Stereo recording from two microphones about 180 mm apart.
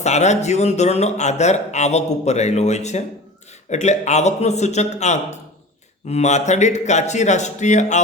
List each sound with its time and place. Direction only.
0.0 s a man's voice: 40° left (ahead or behind)